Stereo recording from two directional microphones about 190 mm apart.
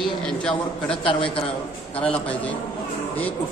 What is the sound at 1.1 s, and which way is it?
Speech, 25° left (ahead or behind).